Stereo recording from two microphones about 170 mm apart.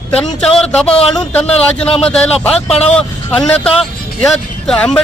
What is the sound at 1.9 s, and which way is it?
A man's voice, 35° left (ahead or behind).